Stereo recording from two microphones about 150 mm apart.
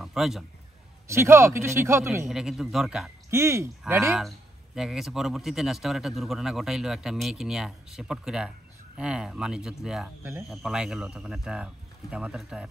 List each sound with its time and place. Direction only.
0.0 s a man's voice: 5° right (ahead or behind)
1.0 s speech: 15° right (ahead or behind)
2.2 s speech: 5° right (ahead or behind)
3.3 s speech: 20° right (ahead or behind)
4.7 s speech: centre (ahead or behind)